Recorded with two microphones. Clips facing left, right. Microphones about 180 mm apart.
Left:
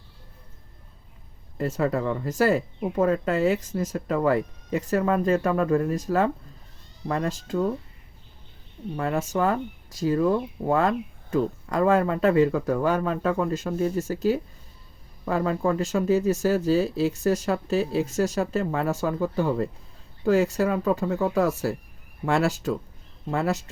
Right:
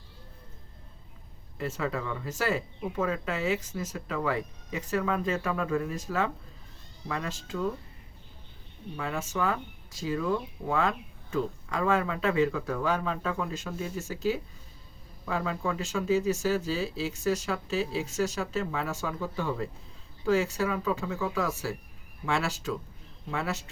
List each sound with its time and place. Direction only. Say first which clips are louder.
1.5 s speech: left 7 dB; 45° left (ahead or behind)
9.0 s speech: left 7 dB; 50° left (ahead or behind)
16.3 s speech: left 7 dB; 40° left (ahead or behind)